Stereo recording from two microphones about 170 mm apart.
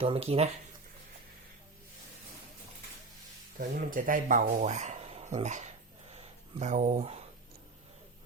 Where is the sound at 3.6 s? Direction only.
55° right (ahead or behind).